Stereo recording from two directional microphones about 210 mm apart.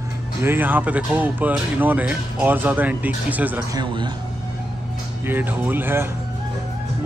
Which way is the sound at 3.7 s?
20° right (ahead or behind).